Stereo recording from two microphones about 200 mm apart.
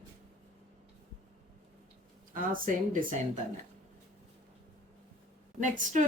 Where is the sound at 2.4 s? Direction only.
45° right (ahead or behind).